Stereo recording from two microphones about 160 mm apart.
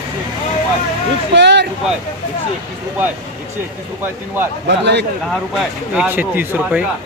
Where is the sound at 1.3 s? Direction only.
90° right.